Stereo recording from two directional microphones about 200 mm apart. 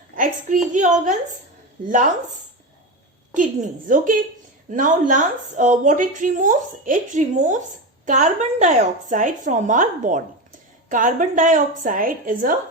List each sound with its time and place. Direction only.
0.2 s a woman's voice: 40° right (ahead or behind)
3.3 s a woman's voice: 40° right (ahead or behind)